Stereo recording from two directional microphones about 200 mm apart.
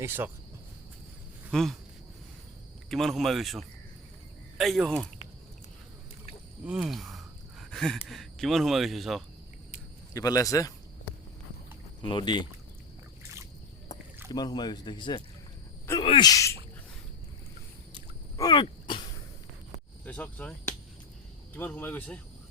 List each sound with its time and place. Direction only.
0.0 s speech: 10° right (ahead or behind)
1.5 s speech: centre (ahead or behind)
2.9 s speech: centre (ahead or behind)
6.7 s speech: centre (ahead or behind)
7.6 s a sound: 5° left (ahead or behind)
8.0 s speech: centre (ahead or behind)
10.2 s speech: 15° left (ahead or behind)
12.0 s speech: 25° left (ahead or behind)
14.3 s speech: 20° left (ahead or behind)
18.3 s sneeze: 20° left (ahead or behind)
20.1 s speech: 5° left (ahead or behind)